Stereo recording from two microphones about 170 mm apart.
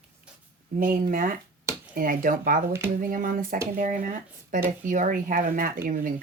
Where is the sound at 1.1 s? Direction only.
55° right (ahead or behind).